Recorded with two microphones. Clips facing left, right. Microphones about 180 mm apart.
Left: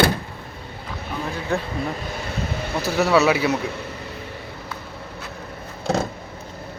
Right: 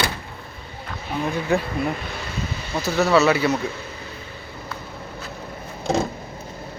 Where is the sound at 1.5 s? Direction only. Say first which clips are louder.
Right 3 dB; 5° right (ahead or behind).